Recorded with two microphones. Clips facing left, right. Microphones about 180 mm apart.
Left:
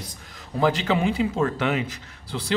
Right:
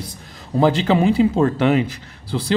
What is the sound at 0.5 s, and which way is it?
Speech, 30° right (ahead or behind).